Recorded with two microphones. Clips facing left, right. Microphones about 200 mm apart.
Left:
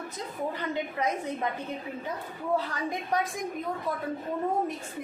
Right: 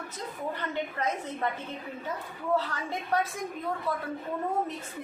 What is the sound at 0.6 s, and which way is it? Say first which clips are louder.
Speech: left 1 dB; 15° left (ahead or behind).